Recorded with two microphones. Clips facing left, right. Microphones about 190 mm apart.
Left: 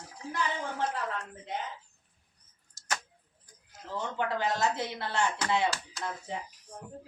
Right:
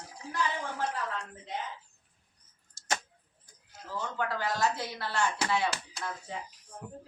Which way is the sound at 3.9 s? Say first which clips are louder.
Left 2 dB; 20° left (ahead or behind).